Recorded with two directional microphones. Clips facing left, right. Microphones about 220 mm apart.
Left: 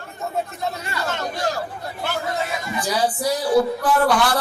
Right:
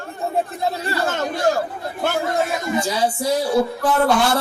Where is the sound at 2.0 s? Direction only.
50° right (ahead or behind).